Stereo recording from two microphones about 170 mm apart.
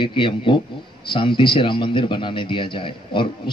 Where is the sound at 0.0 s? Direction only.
30° left (ahead or behind).